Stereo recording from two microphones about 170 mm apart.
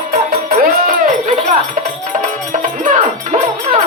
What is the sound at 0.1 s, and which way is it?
Music, 60° right (ahead or behind).